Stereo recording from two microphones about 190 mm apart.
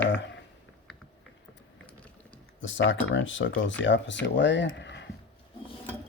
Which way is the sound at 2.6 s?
80° left.